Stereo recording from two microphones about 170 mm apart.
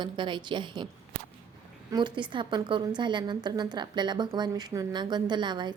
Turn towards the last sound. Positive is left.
turn(degrees=-25)  # may be behind; listen again after turning